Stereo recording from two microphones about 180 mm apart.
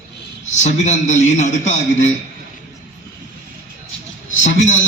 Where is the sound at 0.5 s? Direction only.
40° left (ahead or behind).